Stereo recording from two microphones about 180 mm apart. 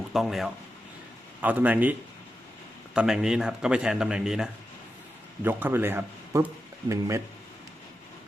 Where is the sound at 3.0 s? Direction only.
5° right (ahead or behind).